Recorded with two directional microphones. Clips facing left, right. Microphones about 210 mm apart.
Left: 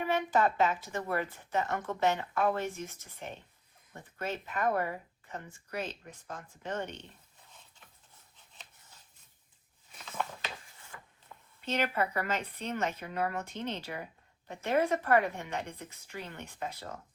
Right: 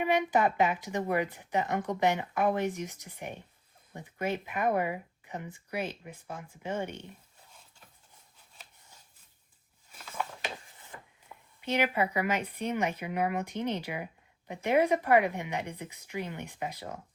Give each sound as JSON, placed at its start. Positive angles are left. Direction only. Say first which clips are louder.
{"t": 0.0, "sound": "speech", "louder": "right 2 dB", "side_deg": -15}
{"t": 9.9, "sound": "a sound", "louder": "even", "side_deg": -5}
{"t": 10.4, "sound": "speech", "louder": "right 4 dB", "side_deg": -20}